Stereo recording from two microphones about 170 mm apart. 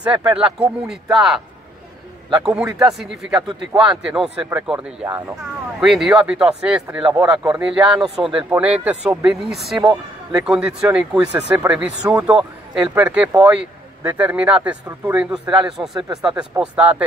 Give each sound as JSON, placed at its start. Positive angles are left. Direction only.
{"t": 0.0, "sound": "speech", "side_deg": -10}
{"t": 3.4, "sound": "speech", "side_deg": -25}
{"t": 4.0, "sound": "speech", "side_deg": -5}
{"t": 8.2, "sound": "speech", "side_deg": -30}
{"t": 8.5, "sound": "speech", "side_deg": -10}
{"t": 15.3, "sound": "speech", "side_deg": -5}